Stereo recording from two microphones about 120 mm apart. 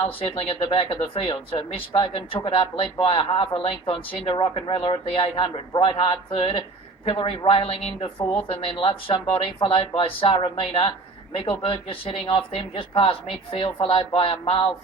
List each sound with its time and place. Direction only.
0.2 s speech: 50° left (ahead or behind)